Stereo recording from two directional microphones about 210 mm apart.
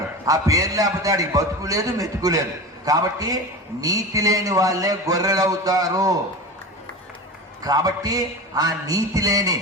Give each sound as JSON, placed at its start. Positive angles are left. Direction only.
{"t": 0.3, "sound": "a man's voice", "side_deg": -15}
{"t": 7.6, "sound": "a man's voice", "side_deg": -15}